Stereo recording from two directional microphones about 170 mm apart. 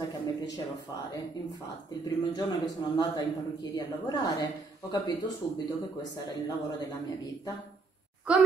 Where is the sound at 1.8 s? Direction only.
20° left (ahead or behind).